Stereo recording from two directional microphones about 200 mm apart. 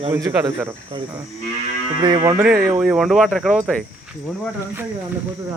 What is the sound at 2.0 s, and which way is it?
Speech, 25° right (ahead or behind).